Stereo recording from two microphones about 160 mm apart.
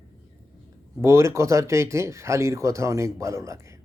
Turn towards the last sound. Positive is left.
turn(degrees=-20)  # may be behind; listen again after turning